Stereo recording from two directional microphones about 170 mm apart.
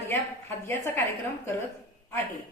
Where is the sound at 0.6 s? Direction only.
15° left (ahead or behind).